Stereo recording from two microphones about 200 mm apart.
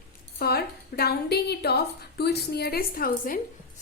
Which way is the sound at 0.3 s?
50° left (ahead or behind).